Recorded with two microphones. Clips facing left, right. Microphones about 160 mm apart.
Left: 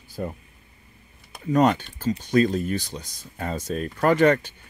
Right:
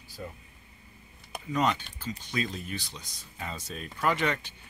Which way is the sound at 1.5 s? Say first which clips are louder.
Left 8 dB; 50° left (ahead or behind).